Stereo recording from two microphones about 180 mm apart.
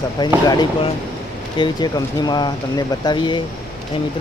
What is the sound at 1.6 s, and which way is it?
Speech, 25° left (ahead or behind).